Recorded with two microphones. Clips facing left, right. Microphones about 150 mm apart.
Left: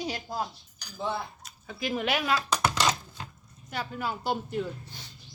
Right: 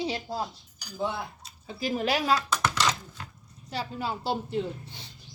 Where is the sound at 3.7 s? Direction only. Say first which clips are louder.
Right 1 dB; 30° right (ahead or behind).